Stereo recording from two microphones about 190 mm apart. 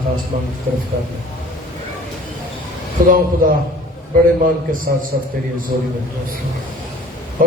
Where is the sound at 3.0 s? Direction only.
45° right (ahead or behind).